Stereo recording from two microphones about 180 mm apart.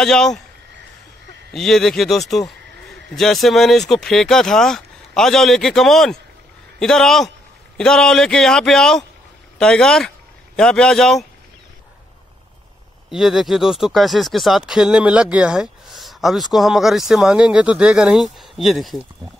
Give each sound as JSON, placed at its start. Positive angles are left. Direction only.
{"t": 0.0, "sound": "speech", "side_deg": 5}
{"t": 1.5, "sound": "speech", "side_deg": 0}
{"t": 13.1, "sound": "speech", "side_deg": 0}